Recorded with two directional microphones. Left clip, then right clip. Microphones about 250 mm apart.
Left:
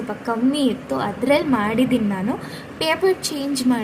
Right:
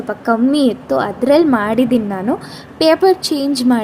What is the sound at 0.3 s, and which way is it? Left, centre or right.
A woman's voice, right.